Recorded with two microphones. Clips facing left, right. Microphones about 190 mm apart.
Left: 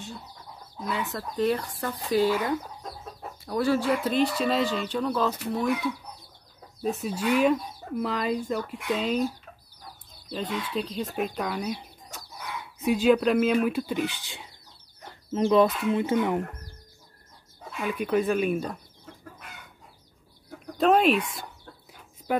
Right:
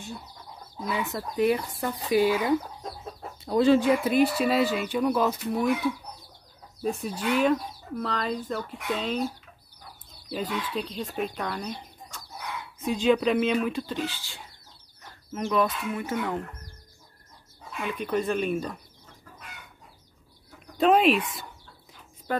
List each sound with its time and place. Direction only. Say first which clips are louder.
0.8 s speech: right 1 dB; 10° right (ahead or behind)
6.8 s speech: left 1 dB; 5° left (ahead or behind)
10.3 s speech: even; 5° right (ahead or behind)
12.8 s speech: left 2 dB; 5° left (ahead or behind)
17.8 s speech: left 3 dB; centre (ahead or behind)
20.8 s speech: even; centre (ahead or behind)
22.3 s speech: left 2 dB; 10° left (ahead or behind)